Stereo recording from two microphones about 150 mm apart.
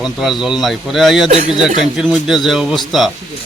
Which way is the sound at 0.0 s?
Centre (ahead or behind).